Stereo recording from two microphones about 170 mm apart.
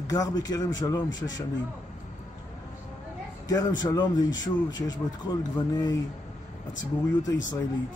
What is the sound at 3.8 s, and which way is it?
Speech, 20° left (ahead or behind).